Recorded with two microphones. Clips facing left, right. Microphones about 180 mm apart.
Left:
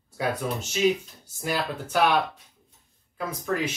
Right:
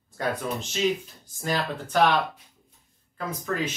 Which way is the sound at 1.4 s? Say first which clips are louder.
Even; 10° left (ahead or behind).